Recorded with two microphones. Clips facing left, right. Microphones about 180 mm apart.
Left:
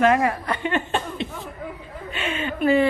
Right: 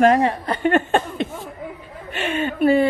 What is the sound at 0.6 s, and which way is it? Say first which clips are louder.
Chuckle: right 6 dB; 50° right (ahead or behind).